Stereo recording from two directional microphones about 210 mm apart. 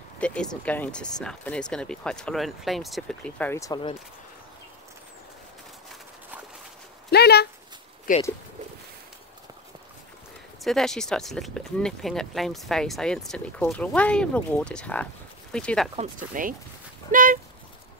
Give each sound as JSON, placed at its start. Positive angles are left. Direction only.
{"t": 0.2, "sound": "speech", "side_deg": 5}
{"t": 7.1, "sound": "dog", "side_deg": 50}
{"t": 8.1, "sound": "speech", "side_deg": 40}
{"t": 10.6, "sound": "speech", "side_deg": 0}
{"t": 16.0, "sound": "speech", "side_deg": -40}